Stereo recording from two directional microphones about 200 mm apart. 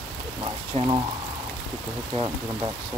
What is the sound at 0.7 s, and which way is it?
Speech, 30° right (ahead or behind).